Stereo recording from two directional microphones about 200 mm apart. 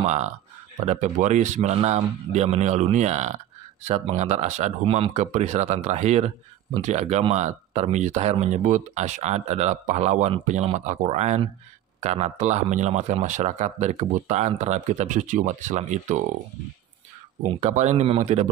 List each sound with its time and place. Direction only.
0.0 s speech: 35° right (ahead or behind)
17.6 s speech: 35° right (ahead or behind)